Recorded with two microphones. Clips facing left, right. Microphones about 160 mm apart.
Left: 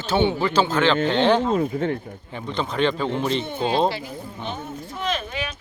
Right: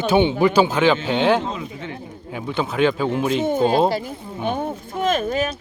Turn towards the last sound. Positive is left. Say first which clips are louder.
# right 7 dB
turn(degrees=-40)  # may be behind; listen again after turning